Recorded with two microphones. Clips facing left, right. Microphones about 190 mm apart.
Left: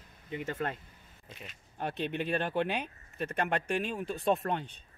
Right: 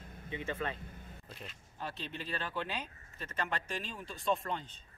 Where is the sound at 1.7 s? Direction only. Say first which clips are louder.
Left 9 dB; 60° left (ahead or behind).